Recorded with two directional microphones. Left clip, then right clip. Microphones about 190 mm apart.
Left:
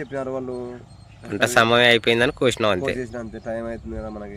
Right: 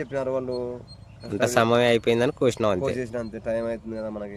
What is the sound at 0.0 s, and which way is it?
Speech, 30° right (ahead or behind).